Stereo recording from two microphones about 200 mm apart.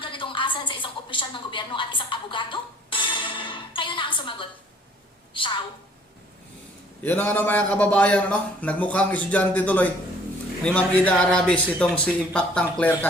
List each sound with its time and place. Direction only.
0.0 s a sound: 25° left (ahead or behind)
5.3 s a woman's voice: 25° left (ahead or behind)
7.0 s a man's voice: 10° left (ahead or behind)